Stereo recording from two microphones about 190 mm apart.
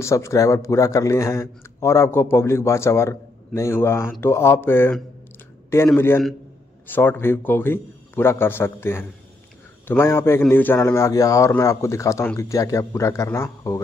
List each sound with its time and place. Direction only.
0.0 s speech: 15° left (ahead or behind)